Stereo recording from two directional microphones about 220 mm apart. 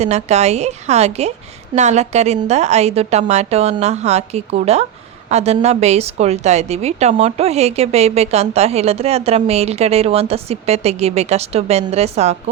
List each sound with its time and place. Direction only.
0.0 s a woman's voice: 30° right (ahead or behind)